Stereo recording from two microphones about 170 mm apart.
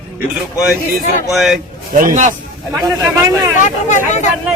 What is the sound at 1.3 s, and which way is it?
Speech, centre (ahead or behind).